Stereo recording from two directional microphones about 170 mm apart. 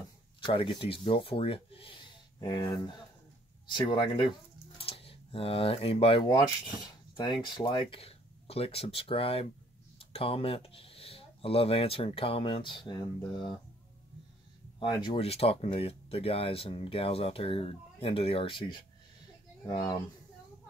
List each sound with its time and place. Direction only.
0.5 s speech: 30° left (ahead or behind)
7.4 s speech: 25° left (ahead or behind)
15.1 s speech: 35° left (ahead or behind)